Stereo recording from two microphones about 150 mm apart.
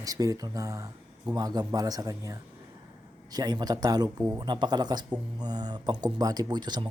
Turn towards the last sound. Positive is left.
turn(degrees=-30)  # may be behind; listen again after turning